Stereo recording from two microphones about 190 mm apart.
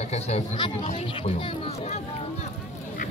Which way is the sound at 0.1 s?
35° left (ahead or behind).